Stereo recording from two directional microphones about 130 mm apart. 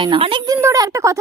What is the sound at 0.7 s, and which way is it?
Speech, 25° right (ahead or behind).